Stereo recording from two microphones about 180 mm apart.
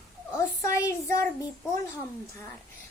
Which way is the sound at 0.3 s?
15° left (ahead or behind).